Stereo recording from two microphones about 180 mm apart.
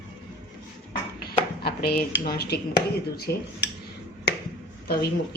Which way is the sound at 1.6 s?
60° left (ahead or behind).